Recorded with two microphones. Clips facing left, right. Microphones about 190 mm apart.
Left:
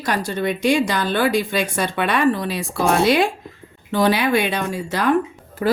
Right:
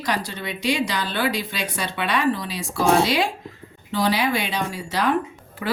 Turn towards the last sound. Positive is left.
turn(degrees=40)  # may be behind; listen again after turning